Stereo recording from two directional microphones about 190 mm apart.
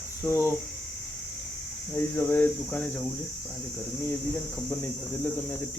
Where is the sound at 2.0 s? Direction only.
10° left (ahead or behind).